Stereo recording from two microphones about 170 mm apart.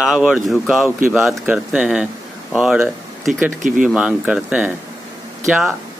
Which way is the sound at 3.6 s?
50° right (ahead or behind).